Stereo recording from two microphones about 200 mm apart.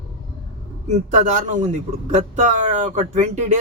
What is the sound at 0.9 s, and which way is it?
Speech, 40° right (ahead or behind).